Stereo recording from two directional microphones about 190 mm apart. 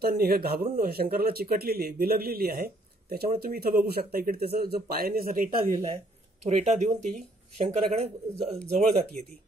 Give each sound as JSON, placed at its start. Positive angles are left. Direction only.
{"t": 0.0, "sound": "speech", "side_deg": -55}
{"t": 6.4, "sound": "speech", "side_deg": -35}